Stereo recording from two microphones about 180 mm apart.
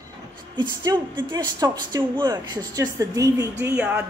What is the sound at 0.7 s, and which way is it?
Speech, 25° right (ahead or behind).